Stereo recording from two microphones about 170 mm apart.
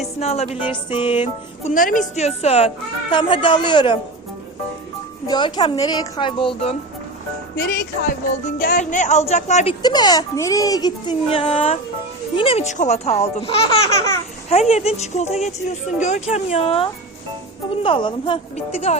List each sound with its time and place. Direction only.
0.2 s a child's voice: 40° left (ahead or behind)
1.7 s speech: 50° left (ahead or behind); by 3.9 s 30° left (ahead or behind)
5.2 s a child's voice: 25° left (ahead or behind)
7.5 s speech: 65° left (ahead or behind)
8.4 s speech: 50° left (ahead or behind)
9.8 s a child's voice: 25° left (ahead or behind)
11.3 s speech: 35° left (ahead or behind)